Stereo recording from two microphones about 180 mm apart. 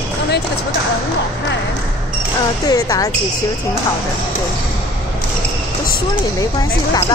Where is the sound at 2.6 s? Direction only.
20° left (ahead or behind).